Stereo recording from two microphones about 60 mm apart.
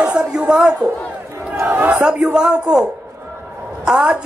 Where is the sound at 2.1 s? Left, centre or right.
Centre.